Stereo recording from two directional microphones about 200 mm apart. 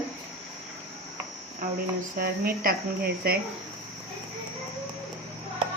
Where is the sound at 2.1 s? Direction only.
50° right (ahead or behind).